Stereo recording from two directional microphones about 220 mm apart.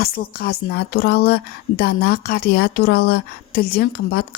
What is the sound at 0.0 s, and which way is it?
A woman's voice, 45° left (ahead or behind).